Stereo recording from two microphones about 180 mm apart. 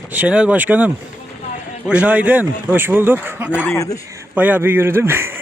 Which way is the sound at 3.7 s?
15° left (ahead or behind).